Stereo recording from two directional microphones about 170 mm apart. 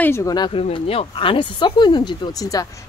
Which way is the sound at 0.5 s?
35° left (ahead or behind).